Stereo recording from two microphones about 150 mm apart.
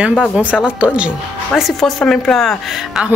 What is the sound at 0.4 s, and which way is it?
A woman's voice, 10° right (ahead or behind).